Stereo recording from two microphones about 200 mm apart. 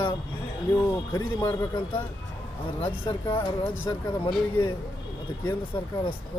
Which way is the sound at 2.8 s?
25° left (ahead or behind).